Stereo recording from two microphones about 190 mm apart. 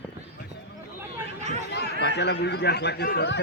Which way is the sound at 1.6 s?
60° left (ahead or behind).